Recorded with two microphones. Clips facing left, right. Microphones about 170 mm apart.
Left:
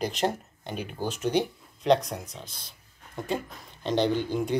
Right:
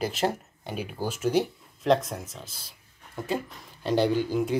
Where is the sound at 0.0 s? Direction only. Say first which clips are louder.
Even; 5° right (ahead or behind).